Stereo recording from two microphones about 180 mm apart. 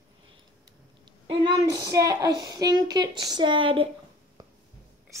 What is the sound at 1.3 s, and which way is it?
A woman's voice, 20° right (ahead or behind).